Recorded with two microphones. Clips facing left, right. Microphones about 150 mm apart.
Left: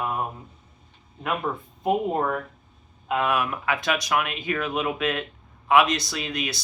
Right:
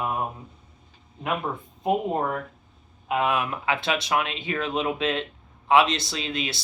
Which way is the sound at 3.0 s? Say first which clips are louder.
Even; 15° right (ahead or behind).